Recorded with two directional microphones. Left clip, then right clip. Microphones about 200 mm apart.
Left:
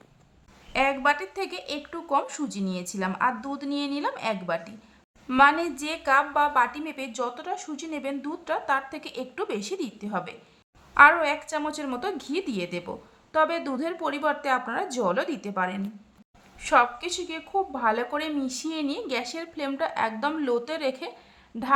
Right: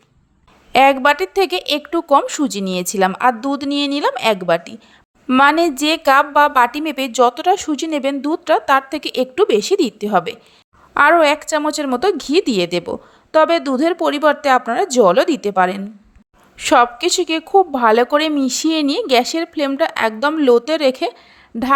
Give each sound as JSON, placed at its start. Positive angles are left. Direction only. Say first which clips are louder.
{"t": 0.7, "sound": "a woman's voice", "louder": "right 12 dB", "side_deg": -45}